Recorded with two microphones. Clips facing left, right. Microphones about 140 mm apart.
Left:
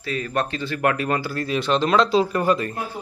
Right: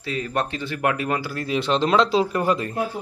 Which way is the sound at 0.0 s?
20° right (ahead or behind).